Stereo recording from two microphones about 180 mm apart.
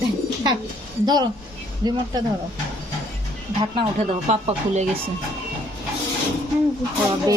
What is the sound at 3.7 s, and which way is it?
Speech, 35° right (ahead or behind).